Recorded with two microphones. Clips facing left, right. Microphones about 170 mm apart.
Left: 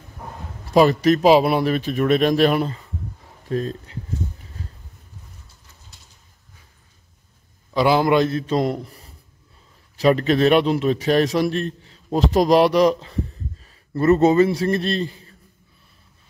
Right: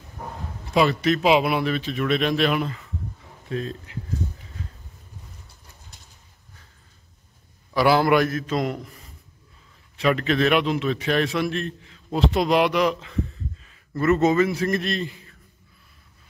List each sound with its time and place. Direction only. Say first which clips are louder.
0.7 s speech: left 5 dB; 40° left (ahead or behind)
7.7 s a man's voice: left 1 dB; 20° left (ahead or behind)